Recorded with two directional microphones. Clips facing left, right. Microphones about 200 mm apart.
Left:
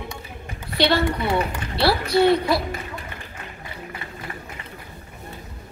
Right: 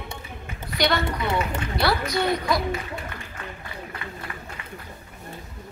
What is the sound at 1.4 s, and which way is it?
A child's voice, 30° left (ahead or behind).